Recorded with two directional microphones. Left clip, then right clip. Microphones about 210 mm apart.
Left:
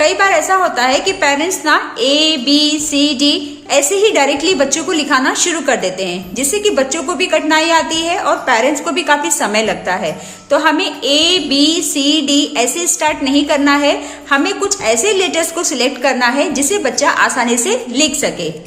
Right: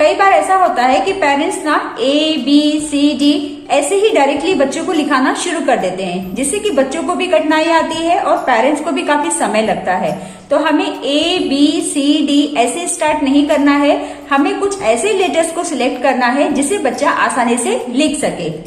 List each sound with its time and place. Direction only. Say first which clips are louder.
0.0 s music: right 2 dB; 30° left (ahead or behind)